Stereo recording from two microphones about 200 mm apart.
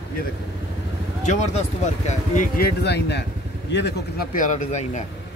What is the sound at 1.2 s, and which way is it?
Speech, 35° left (ahead or behind).